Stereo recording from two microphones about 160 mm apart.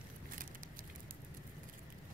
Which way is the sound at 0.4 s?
60° right (ahead or behind).